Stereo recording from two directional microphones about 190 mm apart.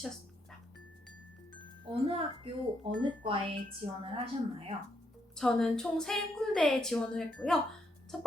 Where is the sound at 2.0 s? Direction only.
30° right (ahead or behind).